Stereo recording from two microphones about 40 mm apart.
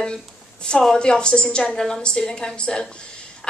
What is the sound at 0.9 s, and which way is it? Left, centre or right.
A woman's voice, left.